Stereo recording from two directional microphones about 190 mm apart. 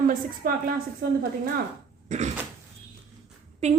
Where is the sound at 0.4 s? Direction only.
50° right (ahead or behind).